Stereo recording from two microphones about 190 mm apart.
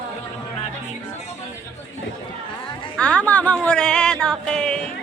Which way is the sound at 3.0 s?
5° left (ahead or behind).